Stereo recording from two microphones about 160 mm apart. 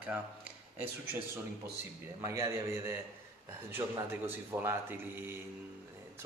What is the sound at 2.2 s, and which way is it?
Speech, 15° right (ahead or behind).